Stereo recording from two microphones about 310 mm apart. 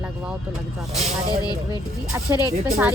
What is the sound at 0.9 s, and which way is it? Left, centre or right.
Speech, centre.